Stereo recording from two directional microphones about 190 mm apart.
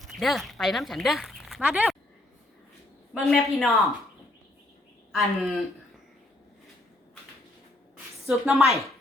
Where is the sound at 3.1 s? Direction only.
Centre (ahead or behind).